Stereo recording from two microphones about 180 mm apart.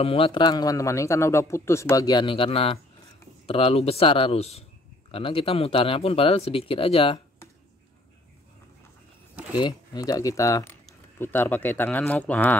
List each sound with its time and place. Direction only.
0.0 s a man's voice: 30° left (ahead or behind)
9.6 s a man's voice: 25° left (ahead or behind)